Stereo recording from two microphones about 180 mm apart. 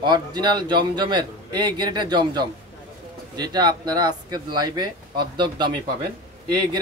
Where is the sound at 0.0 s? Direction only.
25° right (ahead or behind).